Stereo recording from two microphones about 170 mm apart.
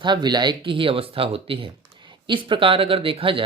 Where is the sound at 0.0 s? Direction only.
25° right (ahead or behind).